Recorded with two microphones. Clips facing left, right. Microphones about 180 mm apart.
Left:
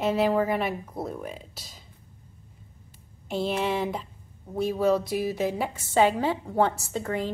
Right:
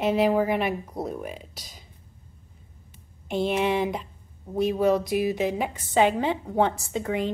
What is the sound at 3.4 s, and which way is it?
Speech, 15° right (ahead or behind).